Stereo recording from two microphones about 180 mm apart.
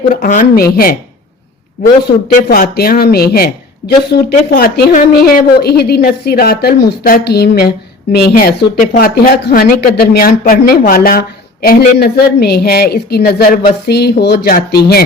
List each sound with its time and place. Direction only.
0.1 s speech: 45° left (ahead or behind)
2.5 s a woman's voice: 55° left (ahead or behind)